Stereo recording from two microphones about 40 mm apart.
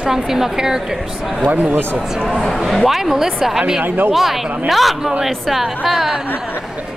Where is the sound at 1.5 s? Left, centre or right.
Right.